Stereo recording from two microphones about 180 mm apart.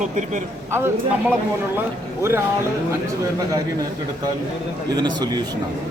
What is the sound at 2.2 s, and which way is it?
Speech, 15° right (ahead or behind).